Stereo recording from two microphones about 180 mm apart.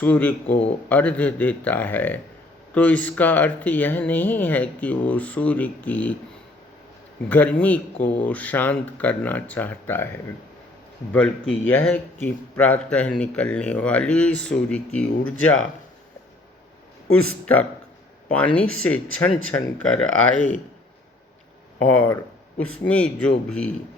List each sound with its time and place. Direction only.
0.0 s speech: 10° left (ahead or behind)
7.3 s speech: 10° left (ahead or behind)
11.1 s speech: 5° left (ahead or behind)
17.1 s speech: 5° left (ahead or behind)
21.8 s speech: 10° left (ahead or behind)